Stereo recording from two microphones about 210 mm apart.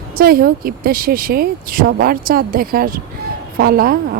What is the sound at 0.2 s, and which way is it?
A woman's voice, 45° right (ahead or behind).